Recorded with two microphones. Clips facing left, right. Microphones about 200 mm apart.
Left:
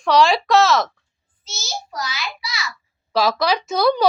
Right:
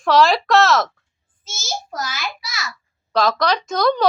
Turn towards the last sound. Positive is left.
turn(degrees=10)  # may be behind; listen again after turning